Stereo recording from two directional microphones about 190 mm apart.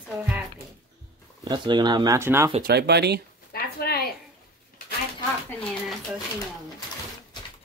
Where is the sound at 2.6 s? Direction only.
60° right (ahead or behind).